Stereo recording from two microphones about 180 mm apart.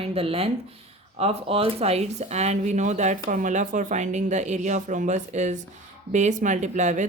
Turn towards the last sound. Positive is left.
turn(degrees=-40)  # may be behind; listen again after turning